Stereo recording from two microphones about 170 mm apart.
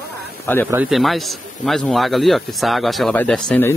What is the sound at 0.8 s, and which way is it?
A man's voice, centre (ahead or behind).